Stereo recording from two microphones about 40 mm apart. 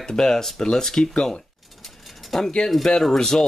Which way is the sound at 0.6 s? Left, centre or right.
Centre.